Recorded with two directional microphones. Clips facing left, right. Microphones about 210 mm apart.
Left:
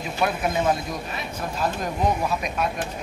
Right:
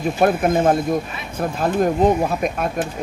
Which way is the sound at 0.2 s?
50° right (ahead or behind).